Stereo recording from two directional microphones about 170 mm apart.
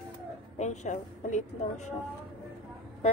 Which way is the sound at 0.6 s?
45° left (ahead or behind).